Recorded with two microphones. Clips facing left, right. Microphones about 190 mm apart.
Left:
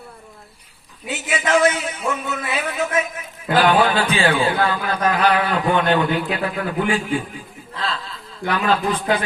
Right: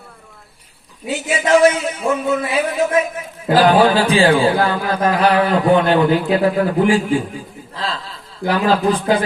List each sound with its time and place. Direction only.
1.0 s a man's voice: 30° right (ahead or behind)
8.4 s a man's voice: 30° right (ahead or behind)